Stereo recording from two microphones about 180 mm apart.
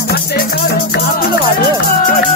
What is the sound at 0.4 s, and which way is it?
Music, 60° left (ahead or behind).